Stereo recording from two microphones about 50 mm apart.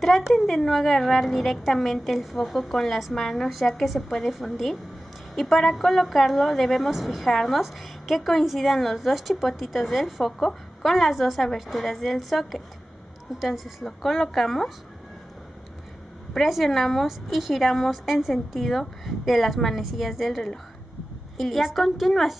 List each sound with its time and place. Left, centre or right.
0.0 s a woman's voice: centre
16.3 s a woman's voice: centre